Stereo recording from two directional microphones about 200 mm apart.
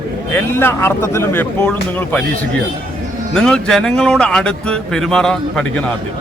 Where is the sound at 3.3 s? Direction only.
5° left (ahead or behind).